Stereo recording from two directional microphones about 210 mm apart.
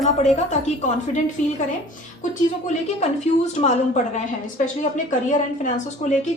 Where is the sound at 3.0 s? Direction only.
35° left (ahead or behind).